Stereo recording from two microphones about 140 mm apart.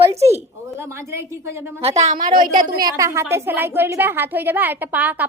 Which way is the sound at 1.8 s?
55° right (ahead or behind).